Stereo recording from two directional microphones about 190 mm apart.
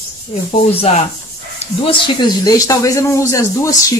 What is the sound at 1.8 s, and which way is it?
Speech, 25° left (ahead or behind).